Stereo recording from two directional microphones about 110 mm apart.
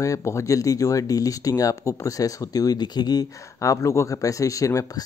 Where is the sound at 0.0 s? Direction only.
30° left (ahead or behind).